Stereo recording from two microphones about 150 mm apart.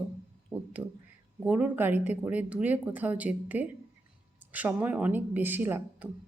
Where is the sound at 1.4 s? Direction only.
10° right (ahead or behind).